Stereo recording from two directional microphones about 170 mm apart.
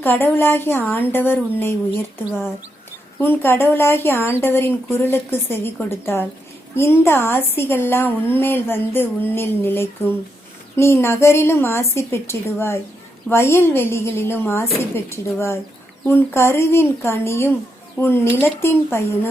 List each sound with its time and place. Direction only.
0.0 s a woman's voice: 10° left (ahead or behind)